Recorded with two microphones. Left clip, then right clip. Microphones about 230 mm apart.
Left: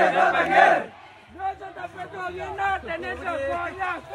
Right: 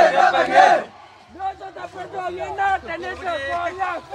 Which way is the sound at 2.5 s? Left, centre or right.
Right.